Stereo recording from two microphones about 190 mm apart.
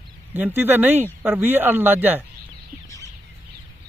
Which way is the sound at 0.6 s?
10° right (ahead or behind).